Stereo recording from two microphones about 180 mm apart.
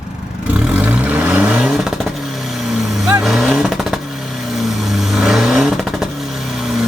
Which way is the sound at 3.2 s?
Centre (ahead or behind).